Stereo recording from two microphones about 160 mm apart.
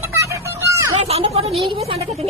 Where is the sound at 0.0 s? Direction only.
15° right (ahead or behind).